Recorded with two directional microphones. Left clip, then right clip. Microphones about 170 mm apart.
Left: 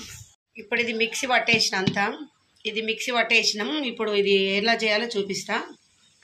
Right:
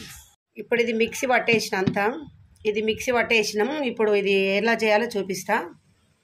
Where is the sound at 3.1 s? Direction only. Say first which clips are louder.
Left 1 dB; 65° right (ahead or behind).